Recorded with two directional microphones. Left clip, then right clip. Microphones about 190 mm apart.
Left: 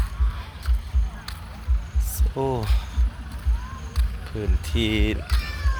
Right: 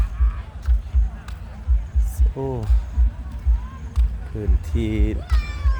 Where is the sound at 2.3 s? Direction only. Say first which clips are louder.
Left 3 dB; 10° left (ahead or behind).